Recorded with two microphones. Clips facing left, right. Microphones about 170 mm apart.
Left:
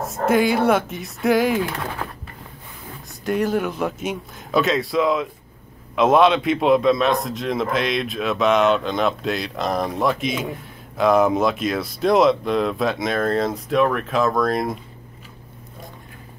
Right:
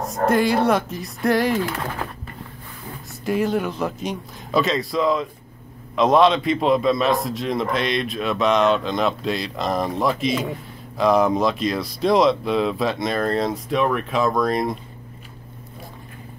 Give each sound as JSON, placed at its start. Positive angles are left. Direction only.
{"t": 0.0, "sound": "a man's voice", "side_deg": 0}
{"t": 3.3, "sound": "a man's voice", "side_deg": 0}